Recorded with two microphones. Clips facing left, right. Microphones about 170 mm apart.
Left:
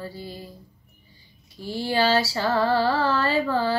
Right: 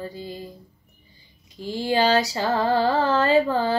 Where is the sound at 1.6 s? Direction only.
15° right (ahead or behind).